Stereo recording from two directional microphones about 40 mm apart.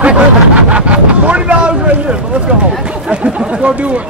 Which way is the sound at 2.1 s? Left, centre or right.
Right.